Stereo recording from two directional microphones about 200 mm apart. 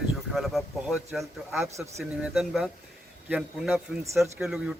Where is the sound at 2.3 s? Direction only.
Centre (ahead or behind).